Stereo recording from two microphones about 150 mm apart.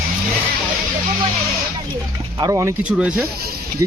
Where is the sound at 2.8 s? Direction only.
5° right (ahead or behind).